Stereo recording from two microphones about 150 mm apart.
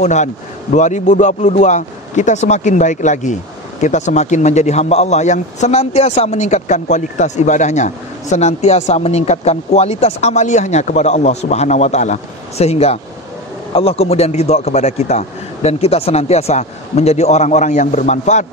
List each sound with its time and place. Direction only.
0.0 s a man's voice: 50° left (ahead or behind)